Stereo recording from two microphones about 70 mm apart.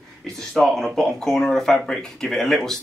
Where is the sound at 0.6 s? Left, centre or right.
Centre.